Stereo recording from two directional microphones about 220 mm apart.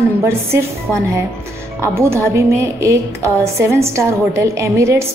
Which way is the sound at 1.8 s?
10° right (ahead or behind).